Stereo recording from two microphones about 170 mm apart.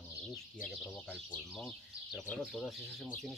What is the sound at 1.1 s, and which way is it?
Speech, 5° left (ahead or behind).